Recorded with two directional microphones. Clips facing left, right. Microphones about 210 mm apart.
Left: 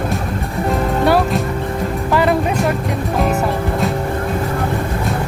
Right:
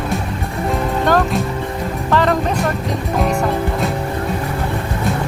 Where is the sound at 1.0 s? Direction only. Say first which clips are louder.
Left 1 dB; 10° left (ahead or behind).